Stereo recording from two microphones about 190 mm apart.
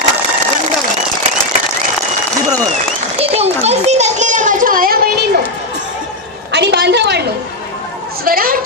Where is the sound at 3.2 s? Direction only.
35° right (ahead or behind); by 5.2 s 50° right (ahead or behind).